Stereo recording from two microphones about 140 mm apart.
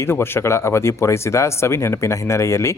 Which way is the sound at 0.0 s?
15° left (ahead or behind).